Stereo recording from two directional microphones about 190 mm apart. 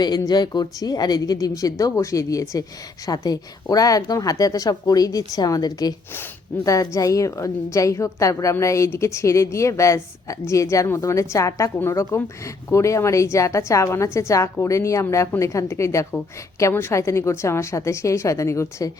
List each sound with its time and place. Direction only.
0.0 s a woman's voice: 20° left (ahead or behind)